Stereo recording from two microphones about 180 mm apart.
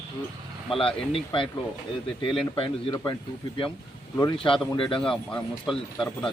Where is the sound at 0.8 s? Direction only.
30° left (ahead or behind).